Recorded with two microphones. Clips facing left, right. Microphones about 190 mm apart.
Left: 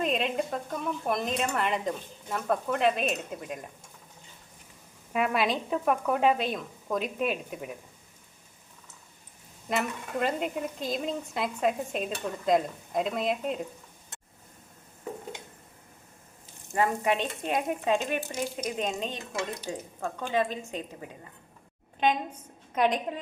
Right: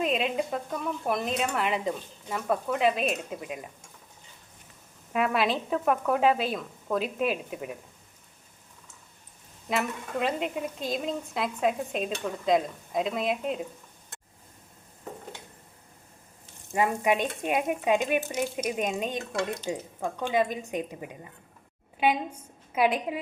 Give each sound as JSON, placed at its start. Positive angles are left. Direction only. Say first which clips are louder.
{"t": 0.0, "sound": "a woman's voice", "louder": "right 1 dB", "side_deg": 0}
{"t": 5.1, "sound": "a woman's voice", "louder": "right 1 dB", "side_deg": 0}
{"t": 9.6, "sound": "a woman's voice", "louder": "right 1 dB", "side_deg": 0}
{"t": 16.7, "sound": "a woman's voice", "louder": "right 1 dB", "side_deg": -10}